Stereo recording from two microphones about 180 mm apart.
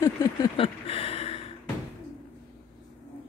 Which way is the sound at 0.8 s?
30° left (ahead or behind).